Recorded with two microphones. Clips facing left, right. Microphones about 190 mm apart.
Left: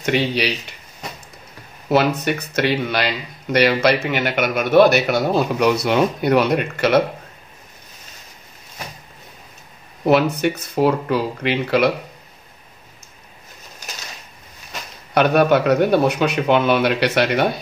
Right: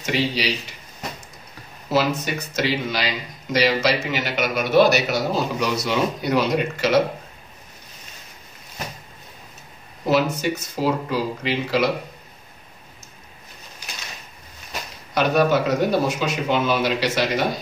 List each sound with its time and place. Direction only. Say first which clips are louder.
0.0 s a man's voice: left 4 dB; 60° left (ahead or behind)
1.9 s a man's voice: left 4 dB; 60° left (ahead or behind)
10.3 s a man's voice: left 5 dB; 60° left (ahead or behind)
15.1 s a man's voice: left 4 dB; 60° left (ahead or behind)